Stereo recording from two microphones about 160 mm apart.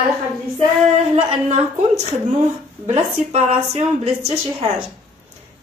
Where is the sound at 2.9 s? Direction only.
40° right (ahead or behind).